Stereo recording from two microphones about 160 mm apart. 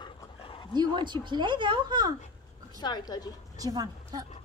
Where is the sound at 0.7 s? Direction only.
25° right (ahead or behind).